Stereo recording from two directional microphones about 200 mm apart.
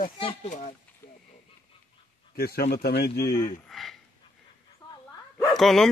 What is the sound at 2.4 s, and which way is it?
Speech, 50° left (ahead or behind).